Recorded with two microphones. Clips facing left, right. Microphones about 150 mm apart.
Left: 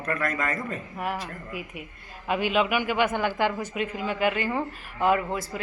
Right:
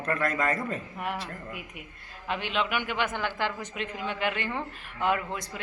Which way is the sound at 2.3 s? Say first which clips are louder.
Left 6 dB; 5° left (ahead or behind).